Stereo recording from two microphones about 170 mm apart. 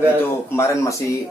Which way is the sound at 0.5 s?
15° left (ahead or behind).